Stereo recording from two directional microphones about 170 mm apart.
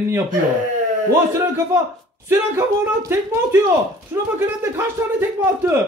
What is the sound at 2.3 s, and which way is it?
Speech, 15° right (ahead or behind).